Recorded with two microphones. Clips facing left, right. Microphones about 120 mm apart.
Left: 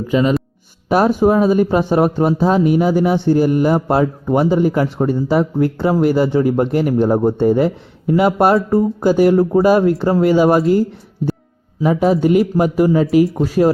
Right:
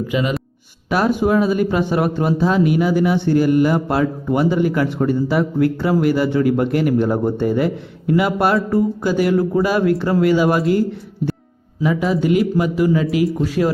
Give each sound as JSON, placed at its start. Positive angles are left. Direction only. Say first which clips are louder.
{"t": 0.1, "sound": "speech", "louder": "left 10 dB", "side_deg": 35}
{"t": 11.8, "sound": "speech", "louder": "left 4 dB", "side_deg": 40}